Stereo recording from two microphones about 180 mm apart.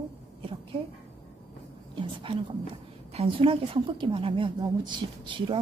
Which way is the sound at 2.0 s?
30° right (ahead or behind).